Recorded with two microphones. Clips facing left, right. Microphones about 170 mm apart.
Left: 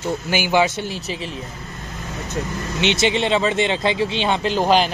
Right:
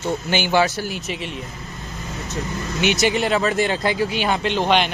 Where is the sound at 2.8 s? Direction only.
25° left (ahead or behind).